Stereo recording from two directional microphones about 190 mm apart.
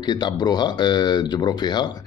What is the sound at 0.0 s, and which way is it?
Speech, 20° left (ahead or behind).